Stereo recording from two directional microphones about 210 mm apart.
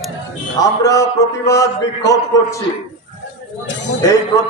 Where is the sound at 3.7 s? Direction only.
60° left (ahead or behind).